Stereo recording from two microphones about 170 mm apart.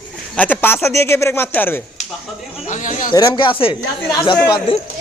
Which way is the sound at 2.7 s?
50° left (ahead or behind).